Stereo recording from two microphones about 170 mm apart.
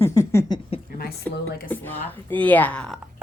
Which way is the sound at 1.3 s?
10° left (ahead or behind).